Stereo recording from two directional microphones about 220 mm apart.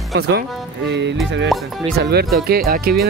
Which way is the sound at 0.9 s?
50° right (ahead or behind).